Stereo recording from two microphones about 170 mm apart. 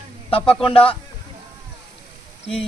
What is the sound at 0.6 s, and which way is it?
Speech, 30° left (ahead or behind).